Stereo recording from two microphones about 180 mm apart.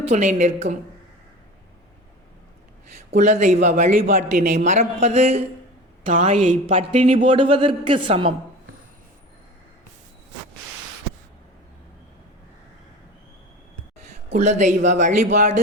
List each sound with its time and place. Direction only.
0.1 s speech: 40° right (ahead or behind)
3.1 s a man's voice: 40° right (ahead or behind)
14.3 s speech: 40° right (ahead or behind)